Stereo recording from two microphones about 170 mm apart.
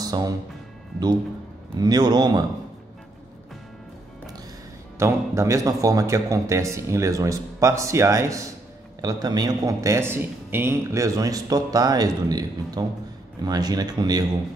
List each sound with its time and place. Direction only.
0.0 s music: 20° right (ahead or behind)
1.8 s a man's voice: 25° right (ahead or behind)
4.9 s a man's voice: 15° right (ahead or behind)